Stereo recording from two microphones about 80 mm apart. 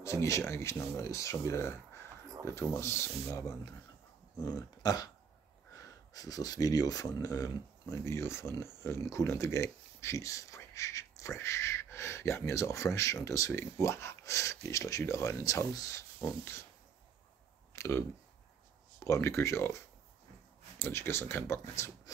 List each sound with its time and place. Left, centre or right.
0.0 s speech: left
4.4 s dog: left
5.8 s speech: left
17.7 s speech: left
19.0 s speech: left
20.8 s speech: left